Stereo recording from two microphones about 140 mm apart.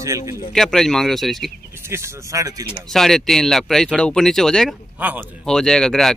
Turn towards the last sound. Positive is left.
turn(degrees=5)  # may be behind; listen again after turning